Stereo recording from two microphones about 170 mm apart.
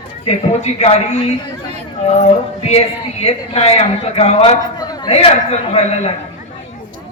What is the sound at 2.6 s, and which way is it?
A man's voice, 40° left (ahead or behind).